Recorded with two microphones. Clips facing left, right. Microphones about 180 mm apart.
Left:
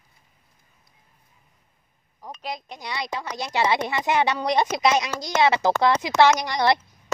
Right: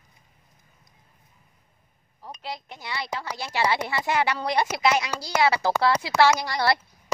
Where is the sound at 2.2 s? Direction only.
15° left (ahead or behind).